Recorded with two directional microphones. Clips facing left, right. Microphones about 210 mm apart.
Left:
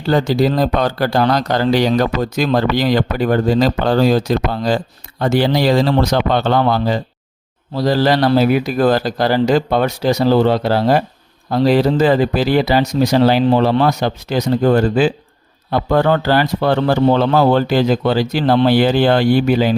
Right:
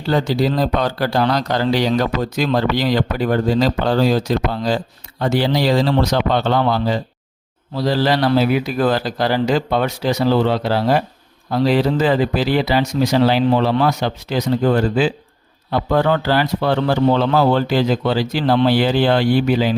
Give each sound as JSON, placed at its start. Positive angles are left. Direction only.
{"t": 0.1, "sound": "speech", "side_deg": 45}